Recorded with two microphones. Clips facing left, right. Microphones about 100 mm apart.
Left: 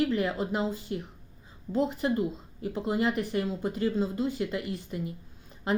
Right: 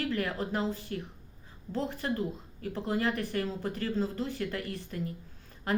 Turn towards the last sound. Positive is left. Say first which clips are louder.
# left 2 dB
turn(degrees=20)  # may be behind; listen again after turning